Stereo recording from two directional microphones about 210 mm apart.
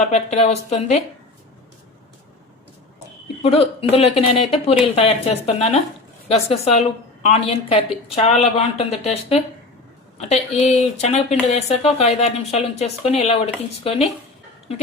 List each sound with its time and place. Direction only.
0.0 s speech: 35° left (ahead or behind)
3.4 s speech: 25° left (ahead or behind)